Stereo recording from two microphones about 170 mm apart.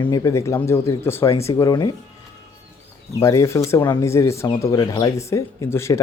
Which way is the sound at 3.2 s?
15° left (ahead or behind).